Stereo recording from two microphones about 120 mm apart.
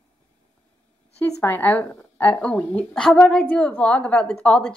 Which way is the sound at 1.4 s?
15° left (ahead or behind).